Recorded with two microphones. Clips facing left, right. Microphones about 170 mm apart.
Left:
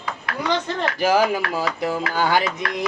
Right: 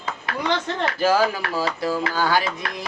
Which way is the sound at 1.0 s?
15° left (ahead or behind).